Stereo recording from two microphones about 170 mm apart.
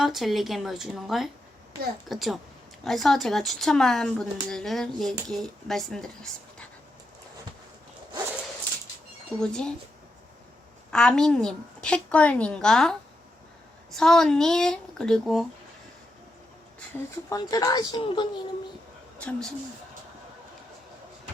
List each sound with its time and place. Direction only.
0.0 s speech: centre (ahead or behind)
9.3 s speech: 5° left (ahead or behind)
10.9 s speech: 5° left (ahead or behind)
17.2 s speech: 20° left (ahead or behind)
19.2 s speech: 5° left (ahead or behind)